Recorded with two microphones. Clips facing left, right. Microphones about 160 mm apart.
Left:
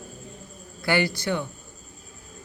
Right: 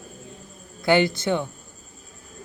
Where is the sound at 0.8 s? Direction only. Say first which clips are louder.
Right 5 dB; 20° right (ahead or behind).